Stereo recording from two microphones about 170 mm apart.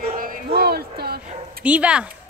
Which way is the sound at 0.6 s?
65° right (ahead or behind).